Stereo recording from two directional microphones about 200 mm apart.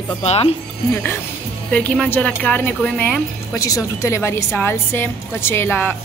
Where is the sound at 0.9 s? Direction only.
10° left (ahead or behind).